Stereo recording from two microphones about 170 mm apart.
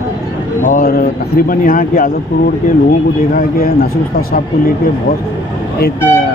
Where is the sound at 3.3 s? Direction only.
60° left (ahead or behind).